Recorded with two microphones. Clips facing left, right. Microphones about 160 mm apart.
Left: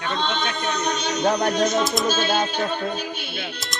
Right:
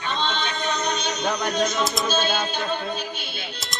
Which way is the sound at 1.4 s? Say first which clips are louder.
Left 3 dB; 50° left (ahead or behind).